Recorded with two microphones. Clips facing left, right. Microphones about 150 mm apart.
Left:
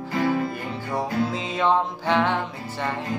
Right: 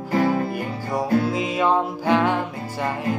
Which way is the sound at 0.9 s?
10° right (ahead or behind).